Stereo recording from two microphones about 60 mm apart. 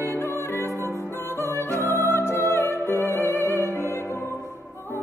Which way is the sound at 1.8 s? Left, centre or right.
Left.